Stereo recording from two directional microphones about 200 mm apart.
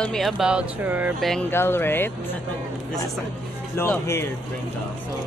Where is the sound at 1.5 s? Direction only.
10° left (ahead or behind).